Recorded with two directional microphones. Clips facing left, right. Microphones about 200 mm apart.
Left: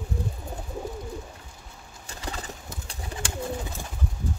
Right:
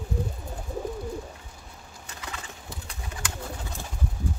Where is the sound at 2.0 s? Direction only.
35° left (ahead or behind).